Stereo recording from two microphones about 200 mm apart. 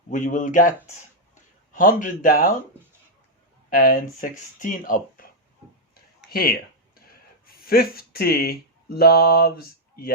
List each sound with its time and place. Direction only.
0.1 s speech: 40° left (ahead or behind)
1.7 s speech: 45° left (ahead or behind)
3.7 s speech: 45° left (ahead or behind)